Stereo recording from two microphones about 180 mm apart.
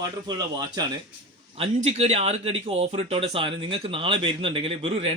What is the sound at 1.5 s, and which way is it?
Speech, 35° right (ahead or behind).